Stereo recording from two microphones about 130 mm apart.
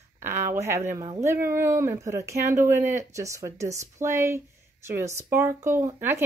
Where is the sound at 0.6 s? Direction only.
20° right (ahead or behind).